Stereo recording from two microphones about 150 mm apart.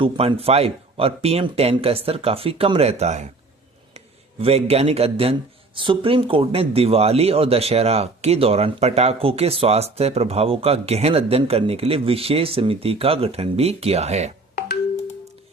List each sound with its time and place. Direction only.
0.0 s speech: 40° right (ahead or behind)